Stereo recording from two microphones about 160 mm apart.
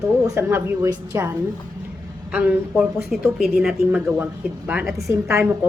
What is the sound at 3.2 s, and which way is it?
A woman's voice, 5° right (ahead or behind).